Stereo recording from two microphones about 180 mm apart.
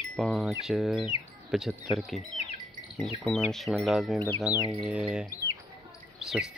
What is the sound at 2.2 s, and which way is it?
Bird, 35° left (ahead or behind).